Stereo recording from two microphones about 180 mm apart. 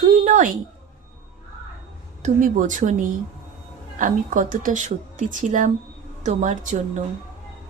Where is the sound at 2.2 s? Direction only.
40° right (ahead or behind).